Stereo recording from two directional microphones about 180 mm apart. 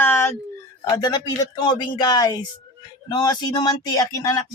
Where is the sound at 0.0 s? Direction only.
10° left (ahead or behind).